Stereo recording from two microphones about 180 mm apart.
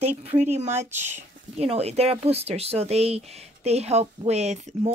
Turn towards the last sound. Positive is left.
turn(degrees=-40)  # may be behind; listen again after turning